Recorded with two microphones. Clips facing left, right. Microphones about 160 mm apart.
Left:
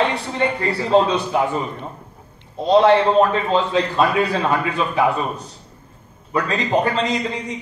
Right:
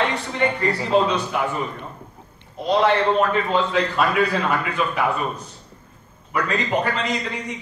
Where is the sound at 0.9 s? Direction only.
30° left (ahead or behind).